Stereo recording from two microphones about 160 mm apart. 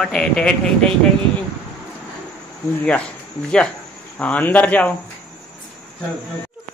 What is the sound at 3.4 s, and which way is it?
Speech, 5° left (ahead or behind).